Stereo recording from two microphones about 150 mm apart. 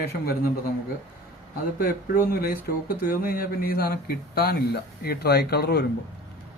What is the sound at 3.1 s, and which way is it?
Speech, 75° left (ahead or behind).